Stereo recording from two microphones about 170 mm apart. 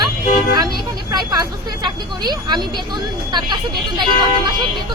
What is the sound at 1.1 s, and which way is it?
A woman's voice, 25° right (ahead or behind).